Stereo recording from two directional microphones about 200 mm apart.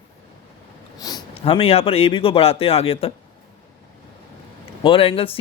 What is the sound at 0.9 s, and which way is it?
Speech, 20° left (ahead or behind).